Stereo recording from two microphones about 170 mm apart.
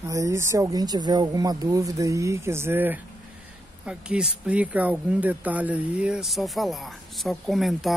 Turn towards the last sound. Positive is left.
turn(degrees=0)  # may be behind; listen again after turning